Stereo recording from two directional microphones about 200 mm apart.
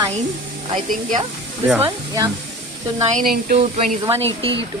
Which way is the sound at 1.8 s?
15° right (ahead or behind).